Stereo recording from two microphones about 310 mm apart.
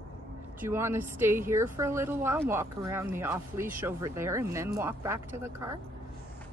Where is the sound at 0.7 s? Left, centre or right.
Centre.